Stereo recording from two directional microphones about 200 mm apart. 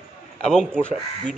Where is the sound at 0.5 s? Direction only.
5° left (ahead or behind).